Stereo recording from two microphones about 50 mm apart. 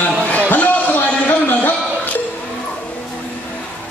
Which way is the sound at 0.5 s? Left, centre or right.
Left.